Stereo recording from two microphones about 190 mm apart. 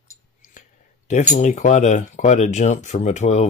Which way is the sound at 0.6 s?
40° left (ahead or behind).